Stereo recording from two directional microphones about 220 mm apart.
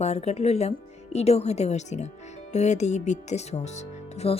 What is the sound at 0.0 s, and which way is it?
Speech, 30° left (ahead or behind).